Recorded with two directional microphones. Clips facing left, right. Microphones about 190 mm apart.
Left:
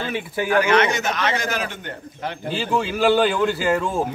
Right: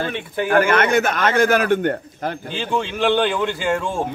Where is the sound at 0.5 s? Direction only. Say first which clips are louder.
Right 2 dB; 50° right (ahead or behind).